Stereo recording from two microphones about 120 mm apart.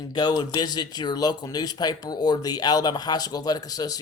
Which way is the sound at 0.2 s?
35° left (ahead or behind).